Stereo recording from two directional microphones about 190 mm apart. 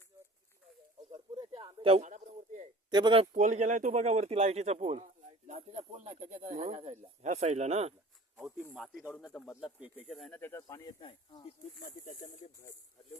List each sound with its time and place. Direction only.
1.1 s a sound: 30° right (ahead or behind)
2.9 s speech: 25° right (ahead or behind)
3.3 s speech: 40° right (ahead or behind)
8.7 s speech: centre (ahead or behind); by 11.5 s 25° left (ahead or behind)
11.8 s speech: 45° left (ahead or behind)